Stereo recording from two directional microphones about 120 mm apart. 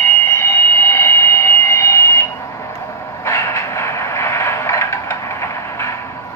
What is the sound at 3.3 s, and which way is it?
Vehicle, 25° left (ahead or behind).